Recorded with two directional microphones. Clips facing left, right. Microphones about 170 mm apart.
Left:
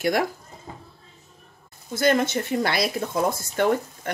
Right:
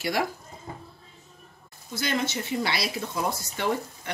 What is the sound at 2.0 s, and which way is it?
A woman's voice, 50° left (ahead or behind).